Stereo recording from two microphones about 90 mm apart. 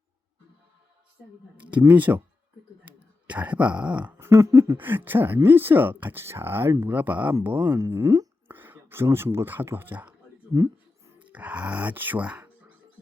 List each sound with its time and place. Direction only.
1.5 s speech: 15° right (ahead or behind)
4.2 s speech: 35° right (ahead or behind)
4.8 s speech: 25° right (ahead or behind)
7.7 s speech: 30° right (ahead or behind)
8.4 s whispering: 20° right (ahead or behind)
9.1 s speech: 25° right (ahead or behind)
10.5 s music: 40° right (ahead or behind)
11.3 s speech: 15° right (ahead or behind)